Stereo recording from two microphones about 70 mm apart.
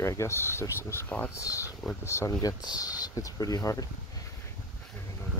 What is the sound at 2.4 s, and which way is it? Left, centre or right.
Speech, left.